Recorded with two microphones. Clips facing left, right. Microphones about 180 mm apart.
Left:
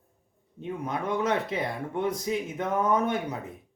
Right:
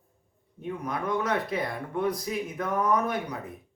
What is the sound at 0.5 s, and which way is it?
Speech, 25° left (ahead or behind).